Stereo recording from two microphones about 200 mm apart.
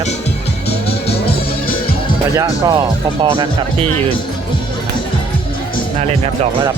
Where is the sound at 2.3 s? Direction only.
20° right (ahead or behind).